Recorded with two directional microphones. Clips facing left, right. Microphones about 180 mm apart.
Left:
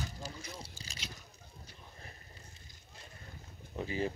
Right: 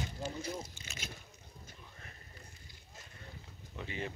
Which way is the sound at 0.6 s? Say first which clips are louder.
Right 2 dB; 35° left (ahead or behind).